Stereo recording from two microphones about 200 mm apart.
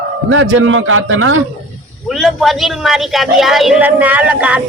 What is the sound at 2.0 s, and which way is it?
A man's voice, centre (ahead or behind).